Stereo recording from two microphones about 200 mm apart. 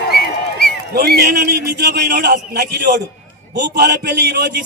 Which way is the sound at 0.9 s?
50° right (ahead or behind).